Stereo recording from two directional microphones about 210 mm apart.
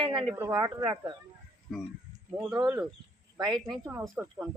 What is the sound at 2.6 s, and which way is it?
Speech, 20° right (ahead or behind).